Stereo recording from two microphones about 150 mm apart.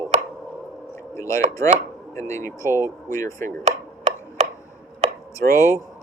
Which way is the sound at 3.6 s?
45° right (ahead or behind).